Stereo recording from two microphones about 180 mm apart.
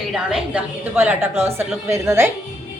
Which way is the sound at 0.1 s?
5° right (ahead or behind).